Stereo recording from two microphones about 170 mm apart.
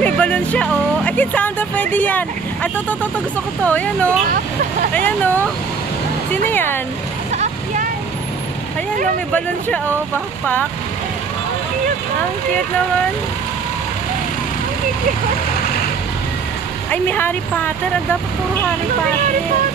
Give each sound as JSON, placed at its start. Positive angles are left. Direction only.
{"t": 0.0, "sound": "speech", "side_deg": 5}
{"t": 6.5, "sound": "speech", "side_deg": 10}
{"t": 7.3, "sound": "vehicle", "side_deg": -50}
{"t": 10.4, "sound": "speech", "side_deg": 10}
{"t": 16.9, "sound": "speech", "side_deg": 10}